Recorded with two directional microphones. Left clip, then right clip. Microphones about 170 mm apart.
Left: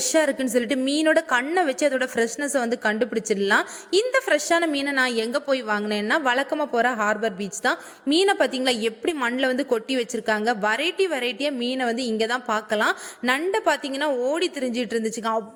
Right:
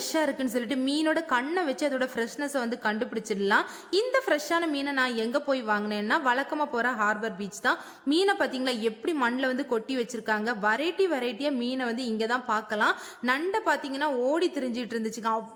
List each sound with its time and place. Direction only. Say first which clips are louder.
0.0 s a woman's voice: left 6 dB; 20° left (ahead or behind)